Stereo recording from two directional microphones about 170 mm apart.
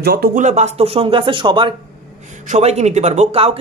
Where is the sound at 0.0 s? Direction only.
65° right (ahead or behind); by 1.7 s 30° right (ahead or behind).